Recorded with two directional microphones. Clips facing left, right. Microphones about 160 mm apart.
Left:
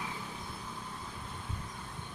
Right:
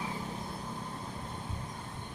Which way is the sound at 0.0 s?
35° right (ahead or behind).